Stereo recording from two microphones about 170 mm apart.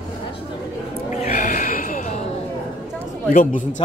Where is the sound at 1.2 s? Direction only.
55° left (ahead or behind).